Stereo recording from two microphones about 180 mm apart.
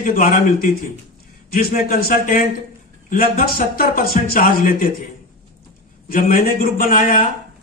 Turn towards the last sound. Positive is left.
turn(degrees=50)  # may be behind; listen again after turning